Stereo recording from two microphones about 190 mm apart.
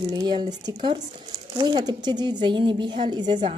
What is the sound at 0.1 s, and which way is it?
Speech, 20° right (ahead or behind).